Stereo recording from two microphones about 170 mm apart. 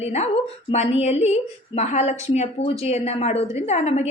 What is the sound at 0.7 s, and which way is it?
A woman's voice, 40° left (ahead or behind).